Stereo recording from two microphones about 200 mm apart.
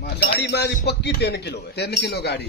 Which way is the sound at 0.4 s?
55° left (ahead or behind).